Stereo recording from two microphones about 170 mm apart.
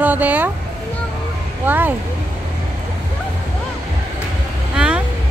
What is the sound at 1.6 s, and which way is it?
Speech, 10° right (ahead or behind).